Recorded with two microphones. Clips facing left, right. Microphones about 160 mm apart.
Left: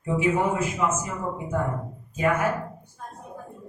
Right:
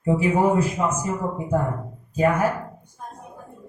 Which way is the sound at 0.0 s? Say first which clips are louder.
Right 4 dB; 35° right (ahead or behind).